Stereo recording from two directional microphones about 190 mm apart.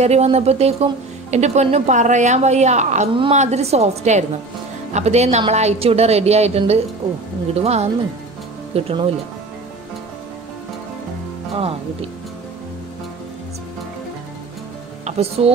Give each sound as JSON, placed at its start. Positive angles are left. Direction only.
{"t": 0.0, "sound": "speech", "side_deg": -35}
{"t": 11.5, "sound": "speech", "side_deg": -30}
{"t": 15.0, "sound": "speech", "side_deg": -30}